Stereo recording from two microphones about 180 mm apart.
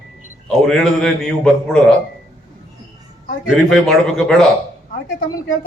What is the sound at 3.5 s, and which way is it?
Speech, 5° left (ahead or behind).